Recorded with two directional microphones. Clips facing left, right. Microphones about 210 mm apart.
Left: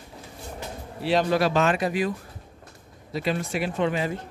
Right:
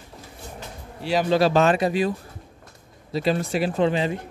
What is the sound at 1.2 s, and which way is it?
Speech, 30° right (ahead or behind).